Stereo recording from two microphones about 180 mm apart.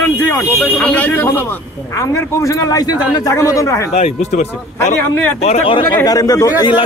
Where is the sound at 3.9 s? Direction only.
35° left (ahead or behind).